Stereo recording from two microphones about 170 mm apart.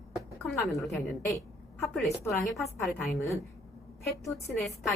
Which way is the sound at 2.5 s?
Centre (ahead or behind).